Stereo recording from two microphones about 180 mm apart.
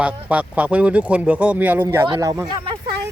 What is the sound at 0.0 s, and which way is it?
Speech, 5° right (ahead or behind).